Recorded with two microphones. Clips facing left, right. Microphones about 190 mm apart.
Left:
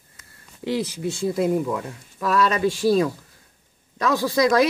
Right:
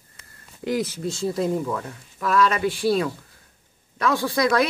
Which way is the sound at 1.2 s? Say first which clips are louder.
Left 2 dB; 10° left (ahead or behind).